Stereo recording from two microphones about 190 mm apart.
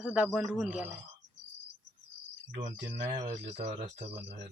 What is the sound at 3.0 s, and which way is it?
Speech, 35° right (ahead or behind).